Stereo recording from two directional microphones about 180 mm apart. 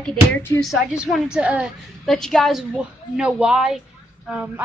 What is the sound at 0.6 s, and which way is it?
A woman's voice, centre (ahead or behind).